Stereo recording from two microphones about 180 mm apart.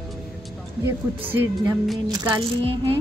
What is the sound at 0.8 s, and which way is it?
Speech, 10° right (ahead or behind).